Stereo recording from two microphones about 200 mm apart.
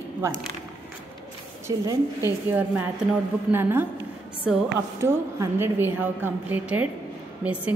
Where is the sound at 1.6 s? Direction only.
15° right (ahead or behind).